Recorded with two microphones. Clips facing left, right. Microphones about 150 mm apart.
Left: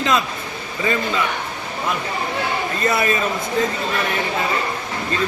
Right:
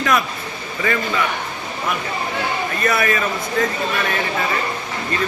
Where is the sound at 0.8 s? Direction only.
20° left (ahead or behind).